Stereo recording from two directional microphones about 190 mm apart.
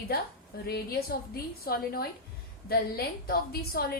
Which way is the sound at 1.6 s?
50° left (ahead or behind).